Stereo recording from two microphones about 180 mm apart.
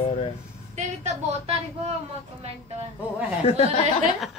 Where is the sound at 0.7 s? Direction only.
40° right (ahead or behind).